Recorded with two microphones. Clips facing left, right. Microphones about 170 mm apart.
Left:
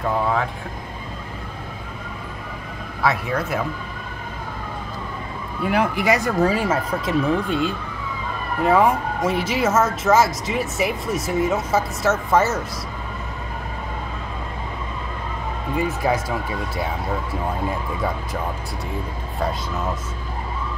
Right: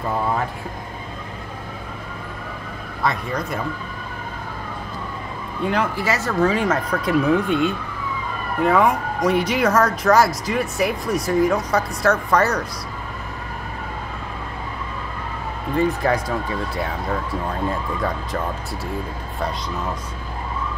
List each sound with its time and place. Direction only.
3.0 s speech: 5° left (ahead or behind)
5.6 s speech: 10° left (ahead or behind)
11.3 s speech: 25° left (ahead or behind)
11.7 s speech: 5° left (ahead or behind)
15.7 s speech: 10° left (ahead or behind)